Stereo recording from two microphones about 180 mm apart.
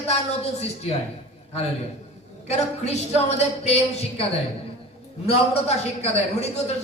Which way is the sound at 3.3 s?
35° left (ahead or behind).